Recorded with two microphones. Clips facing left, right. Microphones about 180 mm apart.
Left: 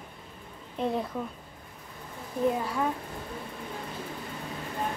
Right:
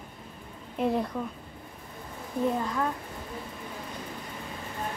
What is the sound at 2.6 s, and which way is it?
Speech, 10° left (ahead or behind).